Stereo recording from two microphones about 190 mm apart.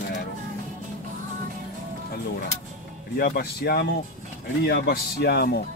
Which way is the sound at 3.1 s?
55° left (ahead or behind).